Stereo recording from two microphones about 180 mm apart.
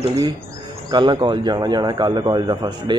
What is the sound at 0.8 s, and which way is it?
Speech, 25° right (ahead or behind).